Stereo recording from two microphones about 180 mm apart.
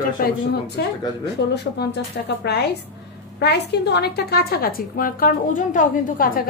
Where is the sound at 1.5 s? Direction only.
70° left (ahead or behind).